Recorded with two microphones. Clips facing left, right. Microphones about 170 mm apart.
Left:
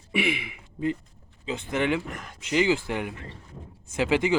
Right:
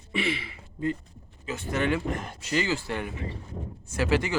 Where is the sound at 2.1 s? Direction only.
30° right (ahead or behind).